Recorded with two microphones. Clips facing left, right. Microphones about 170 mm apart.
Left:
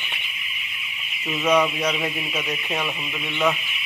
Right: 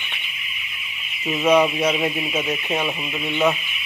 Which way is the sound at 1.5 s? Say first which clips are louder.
Right 3 dB; 25° right (ahead or behind).